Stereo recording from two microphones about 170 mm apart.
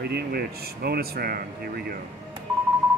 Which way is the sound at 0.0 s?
65° right (ahead or behind).